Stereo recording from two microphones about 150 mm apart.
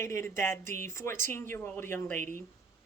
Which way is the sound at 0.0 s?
20° left (ahead or behind).